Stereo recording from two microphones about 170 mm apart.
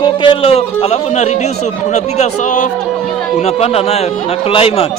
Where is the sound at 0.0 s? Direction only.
30° left (ahead or behind).